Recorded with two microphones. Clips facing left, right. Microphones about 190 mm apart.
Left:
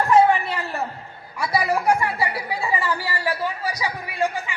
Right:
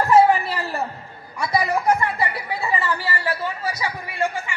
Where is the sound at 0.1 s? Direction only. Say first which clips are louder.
Right 1 dB; centre (ahead or behind).